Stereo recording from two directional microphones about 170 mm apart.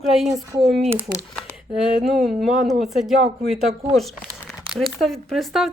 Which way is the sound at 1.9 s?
Centre (ahead or behind).